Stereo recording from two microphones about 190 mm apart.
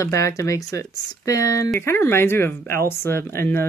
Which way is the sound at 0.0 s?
15° left (ahead or behind).